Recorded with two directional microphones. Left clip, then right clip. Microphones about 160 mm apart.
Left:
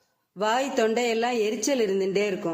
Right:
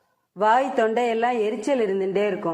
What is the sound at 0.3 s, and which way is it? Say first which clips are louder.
A woman's voice: right 5 dB; 15° left (ahead or behind).